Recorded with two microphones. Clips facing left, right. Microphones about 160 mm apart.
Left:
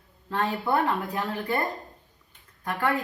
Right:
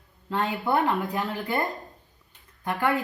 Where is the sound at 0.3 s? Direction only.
20° right (ahead or behind).